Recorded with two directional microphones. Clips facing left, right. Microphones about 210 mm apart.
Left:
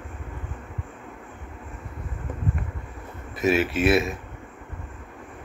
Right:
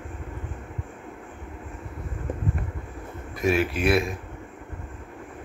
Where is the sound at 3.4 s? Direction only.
Centre (ahead or behind).